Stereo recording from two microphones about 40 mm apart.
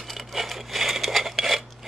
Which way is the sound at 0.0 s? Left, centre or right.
Centre.